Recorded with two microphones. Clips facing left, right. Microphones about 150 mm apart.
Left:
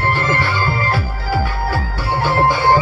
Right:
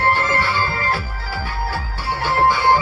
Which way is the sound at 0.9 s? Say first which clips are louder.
Left 5 dB; 45° left (ahead or behind).